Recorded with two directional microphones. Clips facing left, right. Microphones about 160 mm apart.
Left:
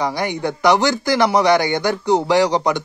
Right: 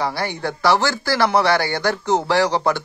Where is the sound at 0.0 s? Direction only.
15° left (ahead or behind).